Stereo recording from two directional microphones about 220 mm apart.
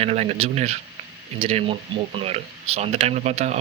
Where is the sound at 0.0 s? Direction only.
30° right (ahead or behind).